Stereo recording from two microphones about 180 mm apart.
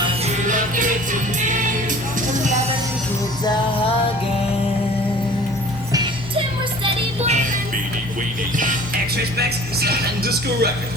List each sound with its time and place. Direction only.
0.4 s music: 45° right (ahead or behind)
3.4 s music: 25° left (ahead or behind)
5.9 s music: 25° right (ahead or behind)
6.8 s music: 40° right (ahead or behind)
9.4 s speech: 60° right (ahead or behind)